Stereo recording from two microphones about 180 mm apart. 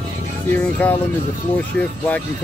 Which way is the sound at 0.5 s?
10° left (ahead or behind).